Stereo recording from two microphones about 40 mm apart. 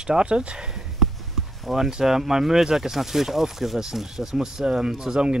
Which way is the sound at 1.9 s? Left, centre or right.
Centre.